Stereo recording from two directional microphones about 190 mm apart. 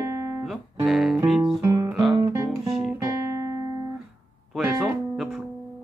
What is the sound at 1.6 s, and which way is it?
Music, 15° right (ahead or behind).